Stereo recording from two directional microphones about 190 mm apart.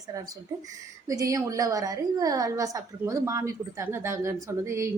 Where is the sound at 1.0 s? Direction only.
20° right (ahead or behind).